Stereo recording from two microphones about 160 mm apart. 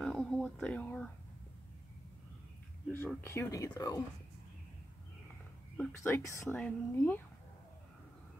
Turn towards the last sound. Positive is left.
turn(degrees=10)  # may be behind; listen again after turning